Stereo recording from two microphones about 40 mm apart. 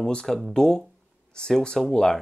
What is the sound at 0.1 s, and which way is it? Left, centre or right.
Speech, left.